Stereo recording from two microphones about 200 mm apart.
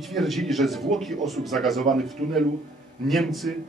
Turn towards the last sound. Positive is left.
turn(degrees=0)  # may be behind; listen again after turning